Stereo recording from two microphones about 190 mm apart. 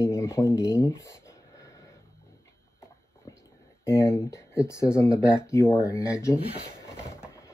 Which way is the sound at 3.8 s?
15° left (ahead or behind).